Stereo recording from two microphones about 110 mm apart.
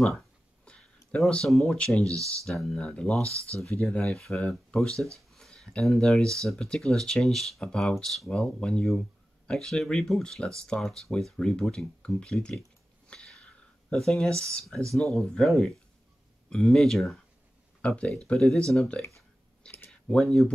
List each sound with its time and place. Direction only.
0.7 s a sound: 10° left (ahead or behind)
1.1 s speech: 5° left (ahead or behind)
4.9 s speech: 25° right (ahead or behind)
5.3 s speech: 5° left (ahead or behind)
13.1 s a sound: 10° left (ahead or behind)
13.8 s speech: 5° left (ahead or behind)
19.6 s clicking: 20° left (ahead or behind)
19.9 s speech: 5° left (ahead or behind)